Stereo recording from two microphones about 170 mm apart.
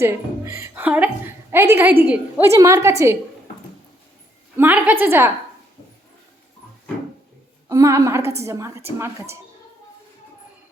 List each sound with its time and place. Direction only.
0.0 s a woman's voice: 15° right (ahead or behind)
4.5 s a woman's voice: 10° right (ahead or behind)
7.7 s a woman's voice: 20° right (ahead or behind)